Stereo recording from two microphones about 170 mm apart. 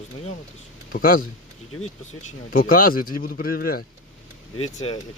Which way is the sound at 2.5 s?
55° left (ahead or behind).